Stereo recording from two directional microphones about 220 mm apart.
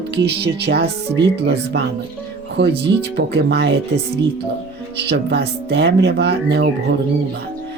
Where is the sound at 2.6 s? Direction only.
50° right (ahead or behind).